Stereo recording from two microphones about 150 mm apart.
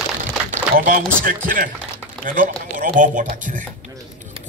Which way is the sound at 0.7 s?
70° right (ahead or behind).